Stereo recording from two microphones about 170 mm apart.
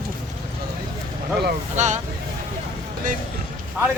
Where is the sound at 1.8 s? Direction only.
45° right (ahead or behind).